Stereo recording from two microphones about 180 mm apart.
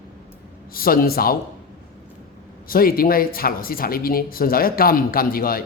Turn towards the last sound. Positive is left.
turn(degrees=55)  # may be behind; listen again after turning